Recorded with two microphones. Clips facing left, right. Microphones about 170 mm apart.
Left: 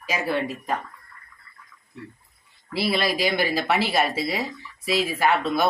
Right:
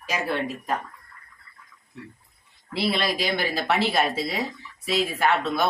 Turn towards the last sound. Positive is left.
turn(degrees=5)  # may be behind; listen again after turning